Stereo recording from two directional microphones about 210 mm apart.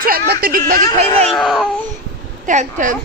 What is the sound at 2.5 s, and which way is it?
Speech, 35° right (ahead or behind).